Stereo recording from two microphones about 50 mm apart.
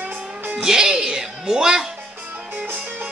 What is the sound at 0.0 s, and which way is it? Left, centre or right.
Music, right.